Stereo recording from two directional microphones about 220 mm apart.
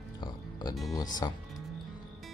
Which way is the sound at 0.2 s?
20° left (ahead or behind).